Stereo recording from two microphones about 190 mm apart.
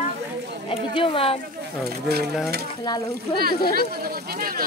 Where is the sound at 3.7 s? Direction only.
55° right (ahead or behind).